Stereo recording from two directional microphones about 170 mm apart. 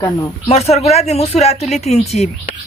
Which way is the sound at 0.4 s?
40° left (ahead or behind).